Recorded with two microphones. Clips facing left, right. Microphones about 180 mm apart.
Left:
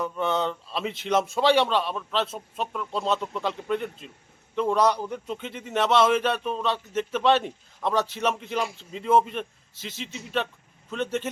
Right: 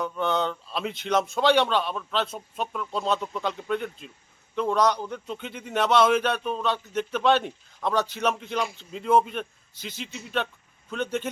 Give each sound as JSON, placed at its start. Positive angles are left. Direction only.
{"t": 0.0, "sound": "a man's voice", "side_deg": 5}